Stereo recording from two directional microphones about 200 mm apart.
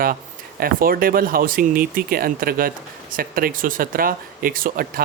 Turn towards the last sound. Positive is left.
turn(degrees=-45)  # may be behind; listen again after turning